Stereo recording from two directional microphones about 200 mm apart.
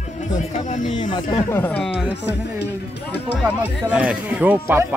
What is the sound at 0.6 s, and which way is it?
Speech, 40° left (ahead or behind).